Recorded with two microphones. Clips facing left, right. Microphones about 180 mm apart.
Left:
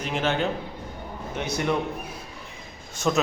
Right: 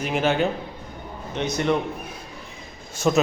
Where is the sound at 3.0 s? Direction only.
5° right (ahead or behind).